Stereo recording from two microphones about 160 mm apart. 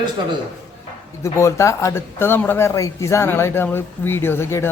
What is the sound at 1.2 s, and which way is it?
Speech, 20° left (ahead or behind).